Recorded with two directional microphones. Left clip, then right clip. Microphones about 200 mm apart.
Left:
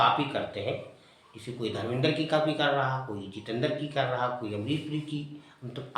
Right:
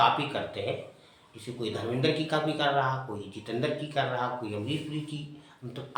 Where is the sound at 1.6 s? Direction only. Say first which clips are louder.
Even; 15° left (ahead or behind).